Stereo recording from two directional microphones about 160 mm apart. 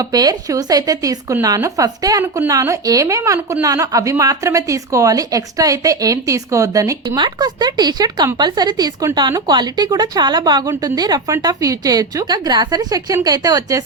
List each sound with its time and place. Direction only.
0.0 s speech: 25° right (ahead or behind)